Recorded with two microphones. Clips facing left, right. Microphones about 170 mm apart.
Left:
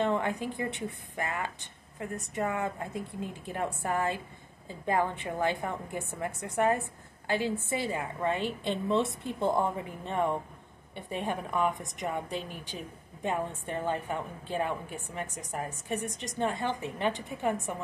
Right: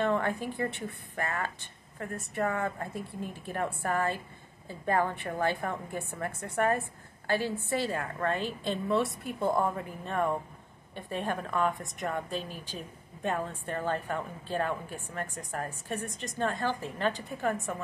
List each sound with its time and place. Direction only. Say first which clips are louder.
0.0 s a woman's voice: even; 15° left (ahead or behind)